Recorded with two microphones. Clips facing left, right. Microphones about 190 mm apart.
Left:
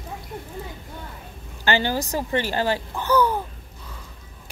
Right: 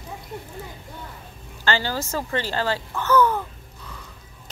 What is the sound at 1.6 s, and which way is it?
A woman's voice, 15° left (ahead or behind).